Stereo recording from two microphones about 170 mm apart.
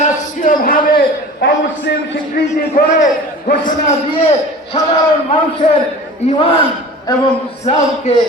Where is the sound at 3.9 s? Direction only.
35° left (ahead or behind).